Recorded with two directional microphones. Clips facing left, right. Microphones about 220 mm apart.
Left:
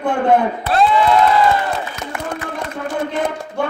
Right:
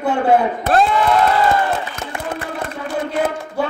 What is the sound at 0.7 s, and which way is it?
Speech, 45° right (ahead or behind).